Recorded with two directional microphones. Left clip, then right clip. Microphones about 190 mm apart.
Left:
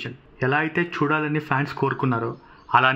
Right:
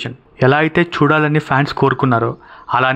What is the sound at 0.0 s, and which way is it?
Speech, 40° right (ahead or behind).